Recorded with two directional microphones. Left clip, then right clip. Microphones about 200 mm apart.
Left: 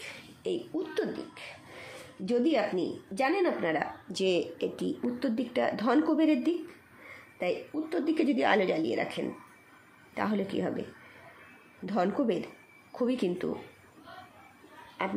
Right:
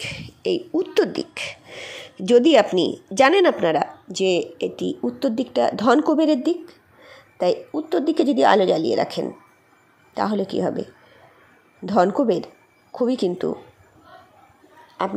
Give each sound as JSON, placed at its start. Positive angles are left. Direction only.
{"t": 0.0, "sound": "speech", "side_deg": -25}